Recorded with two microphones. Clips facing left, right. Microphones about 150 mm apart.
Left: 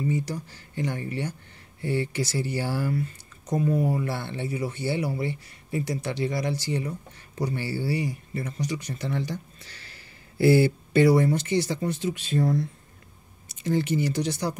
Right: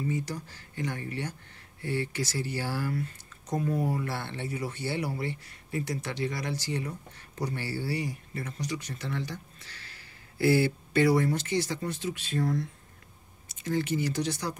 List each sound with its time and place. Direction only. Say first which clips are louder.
0.1 s speech: left 4 dB; 20° left (ahead or behind)
3.4 s speech: left 4 dB; 10° left (ahead or behind)
11.0 s speech: left 4 dB; 25° left (ahead or behind)
13.7 s speech: left 4 dB; 25° left (ahead or behind)